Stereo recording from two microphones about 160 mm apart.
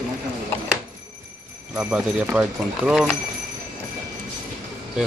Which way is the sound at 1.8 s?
10° right (ahead or behind).